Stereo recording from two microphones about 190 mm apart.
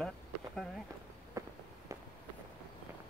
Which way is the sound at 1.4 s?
15° right (ahead or behind).